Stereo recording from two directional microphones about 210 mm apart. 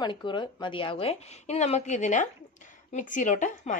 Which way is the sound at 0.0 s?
20° left (ahead or behind).